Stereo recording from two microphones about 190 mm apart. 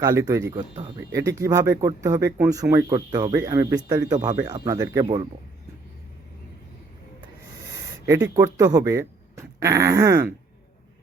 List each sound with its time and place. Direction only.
0.0 s speech: 15° right (ahead or behind)
8.0 s speech: 15° right (ahead or behind)